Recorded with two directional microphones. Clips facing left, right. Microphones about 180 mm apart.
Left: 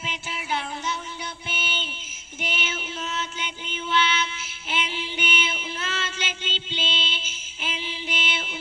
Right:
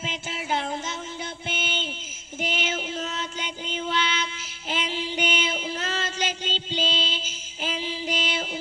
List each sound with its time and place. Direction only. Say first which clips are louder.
0.0 s music: right 2 dB; 45° right (ahead or behind)
1.5 s a sound: right 3 dB; 45° right (ahead or behind)
2.4 s mantra: right 3 dB; 40° right (ahead or behind)
4.6 s music: right 2 dB; 40° right (ahead or behind)